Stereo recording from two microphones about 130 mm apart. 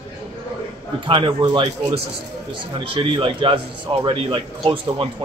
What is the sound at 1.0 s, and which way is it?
A man's voice, 40° right (ahead or behind).